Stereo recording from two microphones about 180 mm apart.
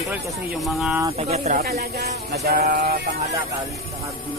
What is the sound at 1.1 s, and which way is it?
Speech, 35° right (ahead or behind).